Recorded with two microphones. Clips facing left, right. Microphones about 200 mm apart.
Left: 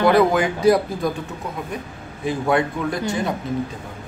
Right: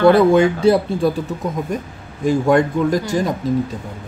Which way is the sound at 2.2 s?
45° right (ahead or behind).